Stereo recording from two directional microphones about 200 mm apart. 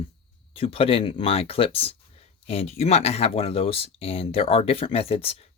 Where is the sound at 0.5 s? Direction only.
30° left (ahead or behind).